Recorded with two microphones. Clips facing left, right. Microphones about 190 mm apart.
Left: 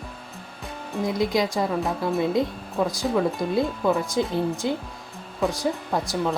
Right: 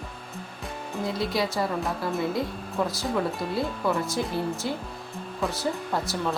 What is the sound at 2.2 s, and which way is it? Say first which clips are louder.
Speech: left 5 dB; 20° left (ahead or behind).